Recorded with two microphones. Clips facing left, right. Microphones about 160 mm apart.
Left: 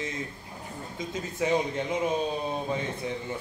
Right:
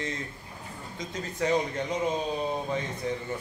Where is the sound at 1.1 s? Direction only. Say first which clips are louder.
Even; 15° left (ahead or behind).